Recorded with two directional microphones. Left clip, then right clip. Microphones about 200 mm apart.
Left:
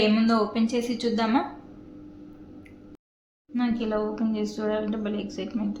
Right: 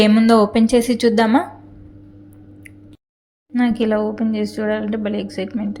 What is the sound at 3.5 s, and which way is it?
A woman's voice, 30° right (ahead or behind).